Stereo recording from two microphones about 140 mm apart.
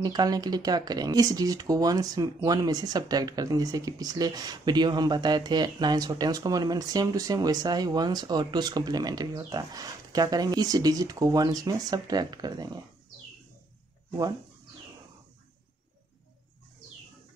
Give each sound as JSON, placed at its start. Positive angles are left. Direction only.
{"t": 0.0, "sound": "speech", "side_deg": -30}